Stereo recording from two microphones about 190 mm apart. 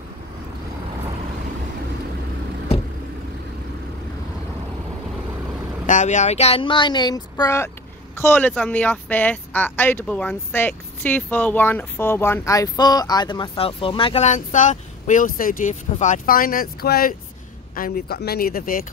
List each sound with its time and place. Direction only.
5.9 s speech: 40° left (ahead or behind)